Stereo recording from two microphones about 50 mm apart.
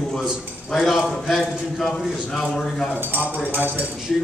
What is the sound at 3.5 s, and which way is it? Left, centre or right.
Speech, right.